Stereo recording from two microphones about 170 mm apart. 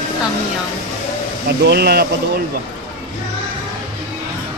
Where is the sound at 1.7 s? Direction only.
70° right (ahead or behind).